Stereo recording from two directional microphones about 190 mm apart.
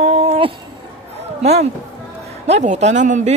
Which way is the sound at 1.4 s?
35° right (ahead or behind).